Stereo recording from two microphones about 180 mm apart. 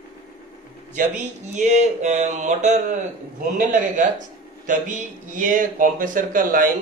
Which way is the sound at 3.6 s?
45° right (ahead or behind).